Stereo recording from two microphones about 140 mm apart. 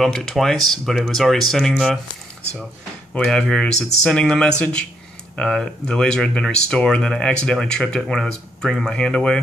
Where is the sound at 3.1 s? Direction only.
5° left (ahead or behind).